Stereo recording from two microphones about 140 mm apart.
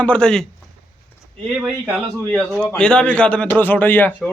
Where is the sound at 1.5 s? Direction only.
5° right (ahead or behind).